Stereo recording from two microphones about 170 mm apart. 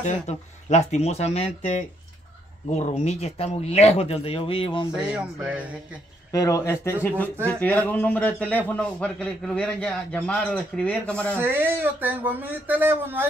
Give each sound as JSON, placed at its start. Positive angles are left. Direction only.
{"t": 0.0, "sound": "speech", "side_deg": 45}
{"t": 4.9, "sound": "speech", "side_deg": -5}
{"t": 6.3, "sound": "a man's voice", "side_deg": 20}
{"t": 11.3, "sound": "speech", "side_deg": -10}